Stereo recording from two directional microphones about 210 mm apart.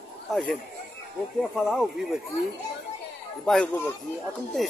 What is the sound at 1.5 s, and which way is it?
Speech, centre (ahead or behind).